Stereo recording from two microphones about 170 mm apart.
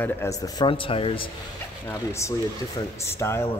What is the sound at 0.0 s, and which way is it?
Speech, 15° left (ahead or behind).